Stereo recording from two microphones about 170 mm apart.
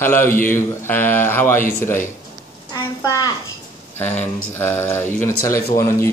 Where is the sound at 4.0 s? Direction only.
10° left (ahead or behind).